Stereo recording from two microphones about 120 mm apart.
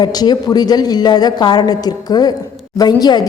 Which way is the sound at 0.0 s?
35° left (ahead or behind).